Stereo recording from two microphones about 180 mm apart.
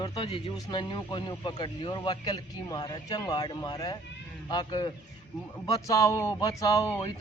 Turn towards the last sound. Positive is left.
turn(degrees=20)  # may be behind; listen again after turning